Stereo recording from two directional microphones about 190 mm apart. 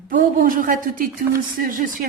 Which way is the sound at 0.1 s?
45° right (ahead or behind).